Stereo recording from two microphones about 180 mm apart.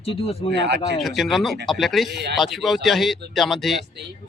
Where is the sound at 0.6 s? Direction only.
70° right (ahead or behind).